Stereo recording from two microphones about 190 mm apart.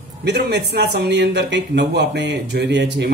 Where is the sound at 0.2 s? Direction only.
60° right (ahead or behind).